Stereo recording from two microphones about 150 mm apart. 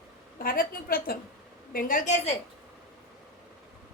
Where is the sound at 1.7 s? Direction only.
65° left (ahead or behind).